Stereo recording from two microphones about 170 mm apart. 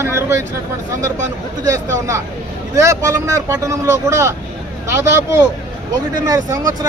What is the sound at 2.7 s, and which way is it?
Speech, 20° right (ahead or behind).